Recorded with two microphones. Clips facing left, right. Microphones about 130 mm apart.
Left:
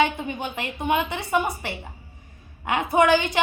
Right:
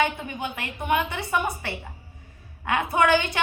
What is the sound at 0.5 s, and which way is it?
A woman's voice, 20° left (ahead or behind).